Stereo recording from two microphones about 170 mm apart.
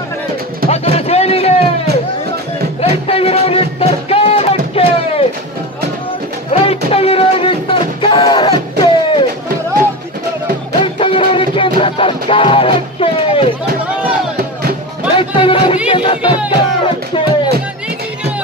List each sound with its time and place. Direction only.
0.7 s a sound: 35° left (ahead or behind)
2.8 s music: 35° left (ahead or behind)
6.5 s music: 35° left (ahead or behind)
10.8 s music: 30° left (ahead or behind)
15.1 s music: 30° left (ahead or behind)